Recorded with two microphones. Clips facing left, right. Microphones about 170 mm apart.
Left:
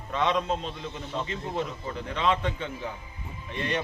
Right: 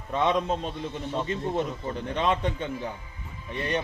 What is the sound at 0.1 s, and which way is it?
Speech, 45° right (ahead or behind).